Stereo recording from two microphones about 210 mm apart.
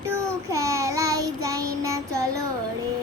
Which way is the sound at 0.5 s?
15° right (ahead or behind).